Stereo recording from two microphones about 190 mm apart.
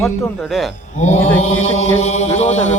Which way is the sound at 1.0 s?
35° left (ahead or behind).